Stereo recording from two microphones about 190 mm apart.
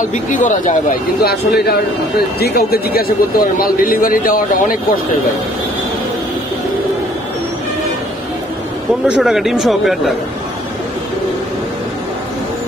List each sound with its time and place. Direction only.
0.1 s speech: 40° left (ahead or behind)
9.2 s speech: centre (ahead or behind)